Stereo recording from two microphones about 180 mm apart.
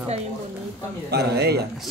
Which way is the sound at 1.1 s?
65° right (ahead or behind).